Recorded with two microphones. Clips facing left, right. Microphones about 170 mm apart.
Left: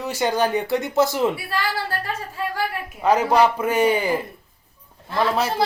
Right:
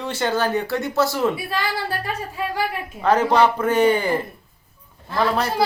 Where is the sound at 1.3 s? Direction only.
15° right (ahead or behind).